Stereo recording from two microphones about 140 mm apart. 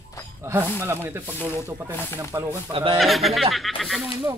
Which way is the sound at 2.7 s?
40° right (ahead or behind).